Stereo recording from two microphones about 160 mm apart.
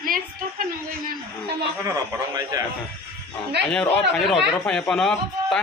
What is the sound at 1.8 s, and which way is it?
Speech, 20° right (ahead or behind).